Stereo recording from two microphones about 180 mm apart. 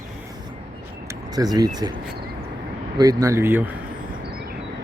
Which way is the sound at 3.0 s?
20° right (ahead or behind).